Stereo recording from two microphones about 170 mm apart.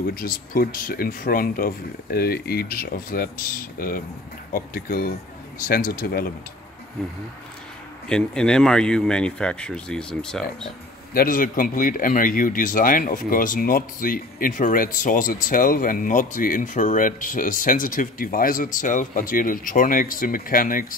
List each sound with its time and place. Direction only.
0.1 s speech: 60° left (ahead or behind)
8.1 s speech: 5° left (ahead or behind)
11.1 s speech: 55° left (ahead or behind)